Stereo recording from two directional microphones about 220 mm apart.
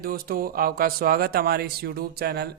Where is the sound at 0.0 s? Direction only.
40° right (ahead or behind).